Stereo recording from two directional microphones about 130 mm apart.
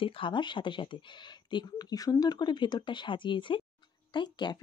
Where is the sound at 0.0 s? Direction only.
40° left (ahead or behind).